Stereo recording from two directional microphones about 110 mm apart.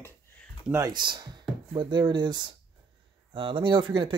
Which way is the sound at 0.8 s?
45° right (ahead or behind).